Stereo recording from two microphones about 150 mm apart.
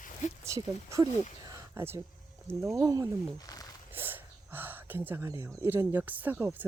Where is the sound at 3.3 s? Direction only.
25° left (ahead or behind).